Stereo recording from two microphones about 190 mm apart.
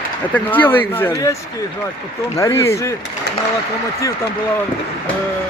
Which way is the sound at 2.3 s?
15° left (ahead or behind).